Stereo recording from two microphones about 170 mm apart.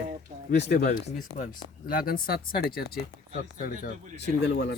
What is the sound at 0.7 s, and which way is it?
Speech, 70° left (ahead or behind).